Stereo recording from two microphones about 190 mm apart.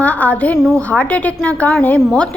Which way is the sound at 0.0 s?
10° left (ahead or behind).